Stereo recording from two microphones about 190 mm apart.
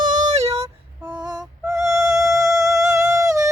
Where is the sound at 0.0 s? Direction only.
40° right (ahead or behind).